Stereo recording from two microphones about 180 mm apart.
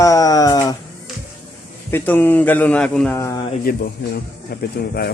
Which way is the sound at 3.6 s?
55° left (ahead or behind).